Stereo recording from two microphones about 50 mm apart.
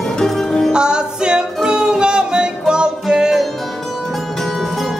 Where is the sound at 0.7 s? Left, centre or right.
Centre.